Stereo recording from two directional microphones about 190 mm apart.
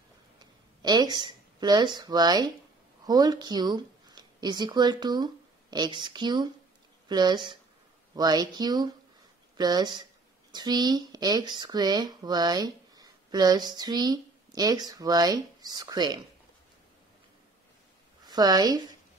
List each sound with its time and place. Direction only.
0.8 s speech: 20° right (ahead or behind)
18.2 s a woman's voice: 20° right (ahead or behind)